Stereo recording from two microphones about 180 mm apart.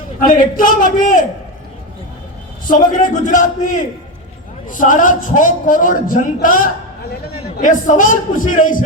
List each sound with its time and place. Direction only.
0.2 s a man's voice: 50° left (ahead or behind)
2.9 s a man's voice: 45° left (ahead or behind)